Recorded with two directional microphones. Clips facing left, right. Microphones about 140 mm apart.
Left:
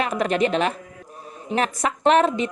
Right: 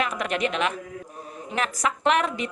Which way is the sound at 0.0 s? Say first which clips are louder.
Left 5 dB; 35° left (ahead or behind).